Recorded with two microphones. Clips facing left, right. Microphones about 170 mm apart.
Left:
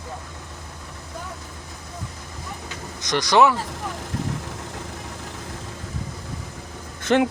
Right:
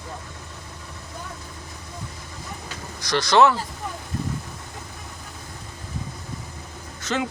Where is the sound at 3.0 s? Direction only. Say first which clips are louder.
Even; 15° left (ahead or behind).